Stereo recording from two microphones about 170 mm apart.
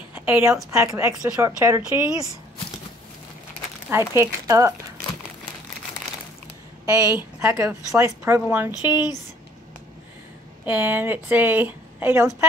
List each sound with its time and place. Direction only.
0.1 s a sound: 10° right (ahead or behind)
0.7 s a woman's voice: 15° right (ahead or behind)
4.1 s a woman's voice: 20° right (ahead or behind)
6.9 s a woman's voice: 20° right (ahead or behind)
8.9 s speech: 25° left (ahead or behind)
10.6 s a woman's voice: 10° right (ahead or behind)